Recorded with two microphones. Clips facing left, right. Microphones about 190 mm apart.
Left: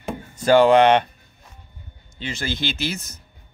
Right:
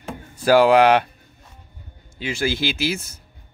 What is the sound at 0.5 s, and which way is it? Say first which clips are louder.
Speech: even; 5° right (ahead or behind).